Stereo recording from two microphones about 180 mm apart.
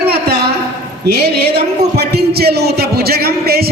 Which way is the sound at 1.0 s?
60° right (ahead or behind).